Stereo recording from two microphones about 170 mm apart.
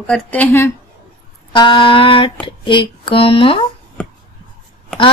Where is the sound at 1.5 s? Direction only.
30° left (ahead or behind).